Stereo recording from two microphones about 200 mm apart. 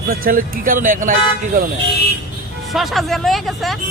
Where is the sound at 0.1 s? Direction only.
45° right (ahead or behind).